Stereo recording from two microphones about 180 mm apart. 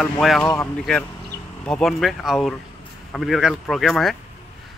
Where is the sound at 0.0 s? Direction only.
Centre (ahead or behind).